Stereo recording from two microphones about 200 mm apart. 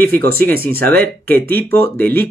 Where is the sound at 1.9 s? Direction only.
10° left (ahead or behind).